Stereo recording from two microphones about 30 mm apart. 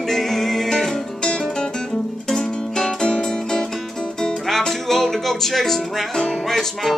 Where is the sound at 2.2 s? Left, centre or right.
Centre.